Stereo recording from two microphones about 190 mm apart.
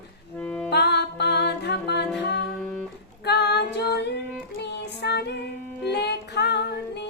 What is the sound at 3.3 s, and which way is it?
Female singing, 60° left (ahead or behind).